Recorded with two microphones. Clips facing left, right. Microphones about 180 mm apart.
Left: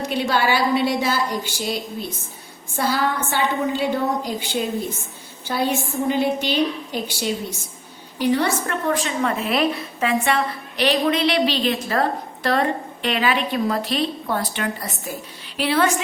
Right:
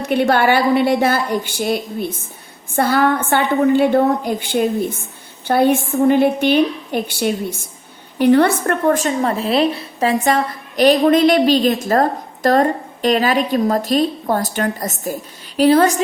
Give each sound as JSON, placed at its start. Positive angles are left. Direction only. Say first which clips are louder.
{"t": 0.1, "sound": "a woman's voice", "louder": "right 7 dB", "side_deg": -55}